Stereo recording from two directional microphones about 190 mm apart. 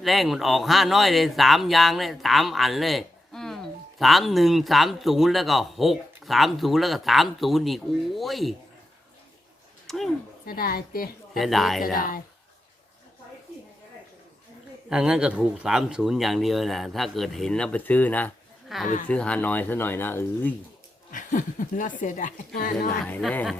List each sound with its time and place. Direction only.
0.0 s speech: centre (ahead or behind)
9.8 s a sound: centre (ahead or behind)
10.4 s speech: 50° left (ahead or behind)
11.3 s speech: centre (ahead or behind)
11.9 s speech: 50° left (ahead or behind)
14.8 s speech: 5° right (ahead or behind); by 20.5 s 10° left (ahead or behind)
21.1 s speech: 45° left (ahead or behind)
23.0 s speech: 10° left (ahead or behind)